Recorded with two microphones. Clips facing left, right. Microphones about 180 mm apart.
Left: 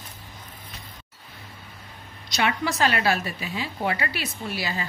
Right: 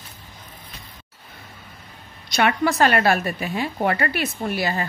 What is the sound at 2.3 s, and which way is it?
A woman's voice, 55° right (ahead or behind).